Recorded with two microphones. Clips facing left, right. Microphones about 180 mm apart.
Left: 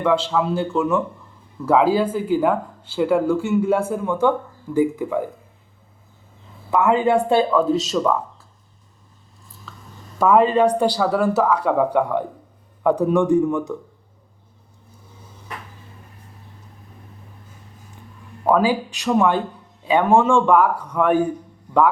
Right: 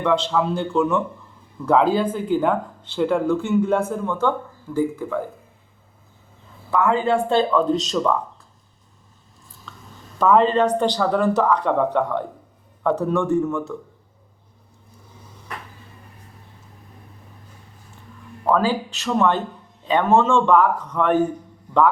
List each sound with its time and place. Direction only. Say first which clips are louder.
0.0 s a man's voice: left 1 dB; 5° left (ahead or behind)
6.7 s speech: left 2 dB; 20° left (ahead or behind)
9.7 s a sound: even; 5° left (ahead or behind)
10.2 s speech: left 1 dB; 10° left (ahead or behind)
18.4 s speech: left 2 dB; 10° left (ahead or behind)